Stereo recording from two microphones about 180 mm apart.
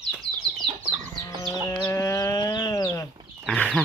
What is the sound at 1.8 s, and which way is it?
Livestock, 15° left (ahead or behind).